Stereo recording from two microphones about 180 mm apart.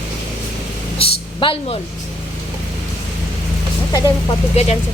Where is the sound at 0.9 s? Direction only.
30° left (ahead or behind).